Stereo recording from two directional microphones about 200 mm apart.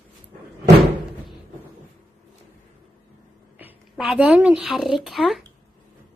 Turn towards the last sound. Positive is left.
turn(degrees=0)  # may be behind; listen again after turning